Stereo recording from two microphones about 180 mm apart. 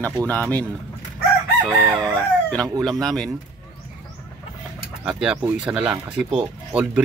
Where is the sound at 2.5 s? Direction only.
5° left (ahead or behind).